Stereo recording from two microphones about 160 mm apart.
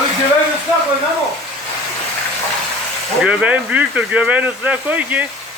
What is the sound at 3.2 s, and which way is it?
Speech, 5° right (ahead or behind).